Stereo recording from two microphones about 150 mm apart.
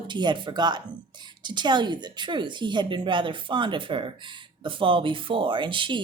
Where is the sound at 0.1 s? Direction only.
30° right (ahead or behind).